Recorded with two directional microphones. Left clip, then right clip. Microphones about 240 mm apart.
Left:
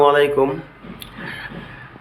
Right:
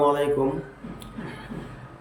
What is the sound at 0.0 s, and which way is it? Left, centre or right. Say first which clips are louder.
Speech: left 8 dB; centre.